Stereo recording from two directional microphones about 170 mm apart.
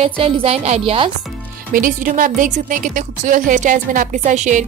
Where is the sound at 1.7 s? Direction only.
50° right (ahead or behind).